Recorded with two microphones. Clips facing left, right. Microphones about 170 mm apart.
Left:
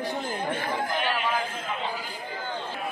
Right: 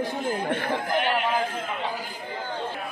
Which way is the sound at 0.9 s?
60° right (ahead or behind).